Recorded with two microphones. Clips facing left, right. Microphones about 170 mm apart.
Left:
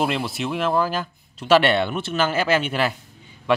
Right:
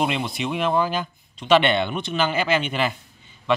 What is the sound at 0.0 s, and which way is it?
Speech, 5° left (ahead or behind).